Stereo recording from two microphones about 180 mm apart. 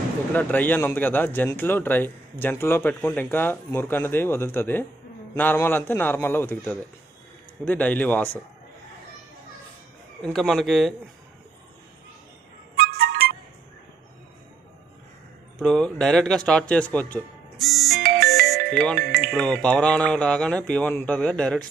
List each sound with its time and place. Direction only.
0.3 s speech: 10° left (ahead or behind)
10.2 s speech: centre (ahead or behind)
12.7 s music: 60° right (ahead or behind)
15.6 s speech: 5° left (ahead or behind)
18.5 s music: 5° left (ahead or behind)
18.9 s speech: 60° right (ahead or behind)
19.3 s speech: 5° left (ahead or behind)